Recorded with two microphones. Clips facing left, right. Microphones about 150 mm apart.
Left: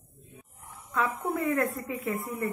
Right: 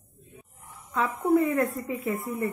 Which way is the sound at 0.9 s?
Centre (ahead or behind).